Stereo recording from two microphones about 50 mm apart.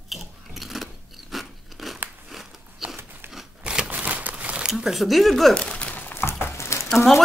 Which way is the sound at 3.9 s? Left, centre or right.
Right.